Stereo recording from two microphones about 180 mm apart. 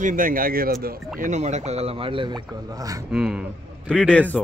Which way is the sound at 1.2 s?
40° right (ahead or behind).